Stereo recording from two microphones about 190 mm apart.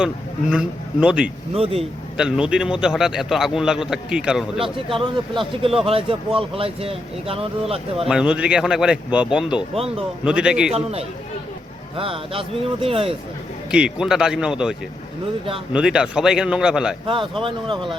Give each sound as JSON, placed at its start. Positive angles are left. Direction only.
{"t": 0.5, "sound": "a man's voice", "side_deg": -5}
{"t": 1.5, "sound": "speech", "side_deg": -30}
{"t": 2.1, "sound": "a man's voice", "side_deg": -5}
{"t": 4.6, "sound": "speech", "side_deg": -30}
{"t": 8.0, "sound": "a man's voice", "side_deg": -5}
{"t": 11.9, "sound": "speech", "side_deg": -30}
{"t": 13.7, "sound": "a man's voice", "side_deg": -5}
{"t": 17.1, "sound": "speech", "side_deg": -25}